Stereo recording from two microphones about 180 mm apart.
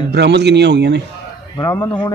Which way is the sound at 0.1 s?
70° right (ahead or behind).